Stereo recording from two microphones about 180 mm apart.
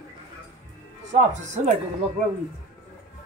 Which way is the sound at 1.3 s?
40° right (ahead or behind).